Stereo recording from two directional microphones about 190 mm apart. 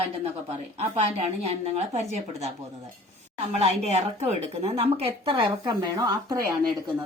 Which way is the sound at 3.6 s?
35° right (ahead or behind).